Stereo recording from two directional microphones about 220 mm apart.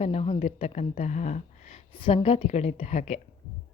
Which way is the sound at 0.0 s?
30° left (ahead or behind).